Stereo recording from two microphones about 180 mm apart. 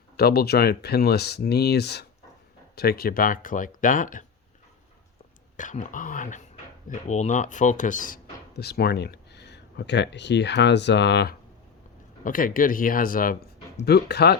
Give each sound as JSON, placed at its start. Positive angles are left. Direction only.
{"t": 0.2, "sound": "speech", "side_deg": 60}
{"t": 5.5, "sound": "speech", "side_deg": 45}
{"t": 12.2, "sound": "speech", "side_deg": 50}
{"t": 13.8, "sound": "speech", "side_deg": 65}